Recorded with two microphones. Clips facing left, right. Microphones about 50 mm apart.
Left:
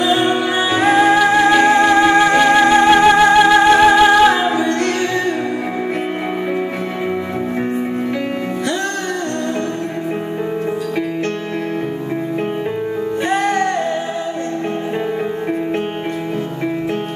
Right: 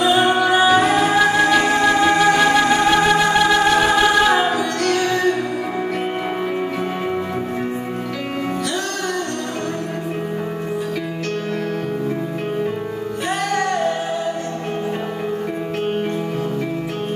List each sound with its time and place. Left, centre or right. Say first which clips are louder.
0.1 s music: right 1 dB; left
1.1 s music: left 3 dB; centre
1.6 s music: left 4 dB; left
13.3 s music: left 4 dB; left